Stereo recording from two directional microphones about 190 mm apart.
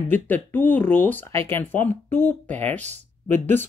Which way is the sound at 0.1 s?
10° left (ahead or behind).